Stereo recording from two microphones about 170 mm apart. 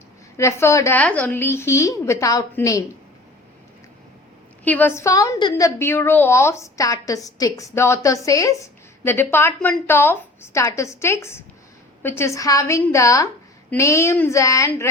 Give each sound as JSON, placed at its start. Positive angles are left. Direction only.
{"t": 0.3, "sound": "a woman's voice", "side_deg": 15}
{"t": 4.6, "sound": "a woman's voice", "side_deg": 10}